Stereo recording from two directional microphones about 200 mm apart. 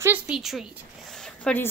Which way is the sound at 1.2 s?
5° left (ahead or behind).